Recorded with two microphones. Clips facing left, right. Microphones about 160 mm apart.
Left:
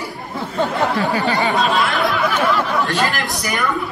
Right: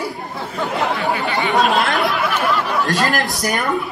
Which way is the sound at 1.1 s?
40° left (ahead or behind).